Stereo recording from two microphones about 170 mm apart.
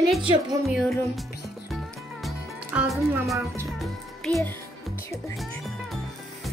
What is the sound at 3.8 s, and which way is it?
Music, centre (ahead or behind).